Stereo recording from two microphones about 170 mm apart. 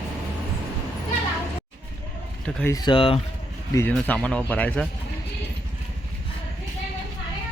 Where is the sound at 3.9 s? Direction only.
10° left (ahead or behind).